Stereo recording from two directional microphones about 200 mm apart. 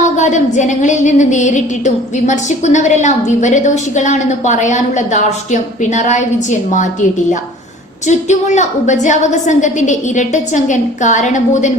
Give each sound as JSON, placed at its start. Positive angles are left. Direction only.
{"t": 0.2, "sound": "a woman's voice", "side_deg": 35}
{"t": 8.0, "sound": "a woman's voice", "side_deg": 35}